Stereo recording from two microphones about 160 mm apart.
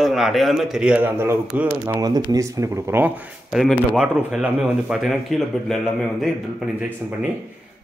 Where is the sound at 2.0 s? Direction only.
25° right (ahead or behind); by 7.3 s 5° right (ahead or behind).